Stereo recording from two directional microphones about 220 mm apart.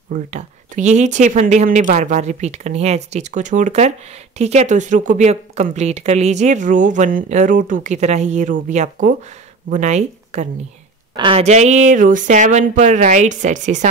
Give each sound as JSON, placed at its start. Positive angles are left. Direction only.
{"t": 0.1, "sound": "a woman's voice", "side_deg": -35}